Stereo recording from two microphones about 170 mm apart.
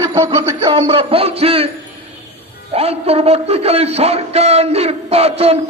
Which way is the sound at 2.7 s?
35° right (ahead or behind).